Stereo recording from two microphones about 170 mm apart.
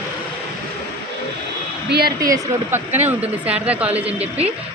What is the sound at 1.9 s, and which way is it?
Speech, 70° right (ahead or behind).